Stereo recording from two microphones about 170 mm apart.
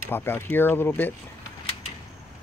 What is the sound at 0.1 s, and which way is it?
Speech, 10° left (ahead or behind).